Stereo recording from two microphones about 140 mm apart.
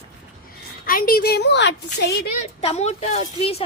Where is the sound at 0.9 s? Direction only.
90° left.